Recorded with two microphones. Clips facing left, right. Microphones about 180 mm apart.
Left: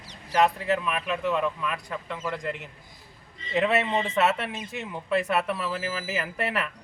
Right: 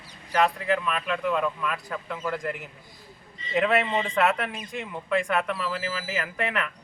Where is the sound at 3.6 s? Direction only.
5° left (ahead or behind).